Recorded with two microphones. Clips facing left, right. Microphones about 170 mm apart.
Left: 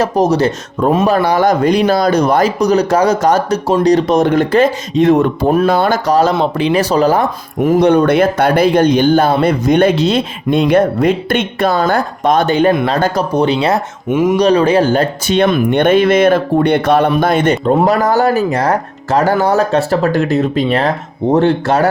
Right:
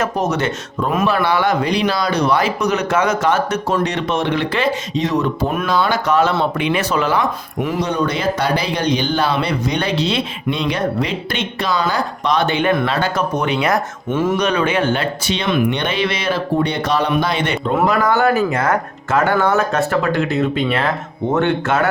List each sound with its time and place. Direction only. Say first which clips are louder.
0.0 s speech: left 7 dB; 35° left (ahead or behind); by 6.0 s 50° left (ahead or behind)
6.1 s speech: left 4 dB; 35° left (ahead or behind)
14.1 s speech: left 5 dB; 15° left (ahead or behind)
14.3 s speech: left 7 dB; 35° left (ahead or behind)